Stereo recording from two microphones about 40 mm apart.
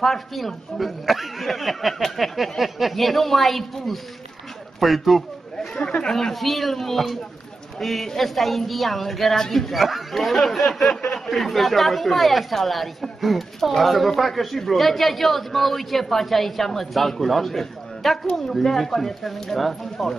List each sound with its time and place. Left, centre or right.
0.0 s speech: centre
4.7 s a sound: centre
5.8 s speech: left
6.1 s speech: centre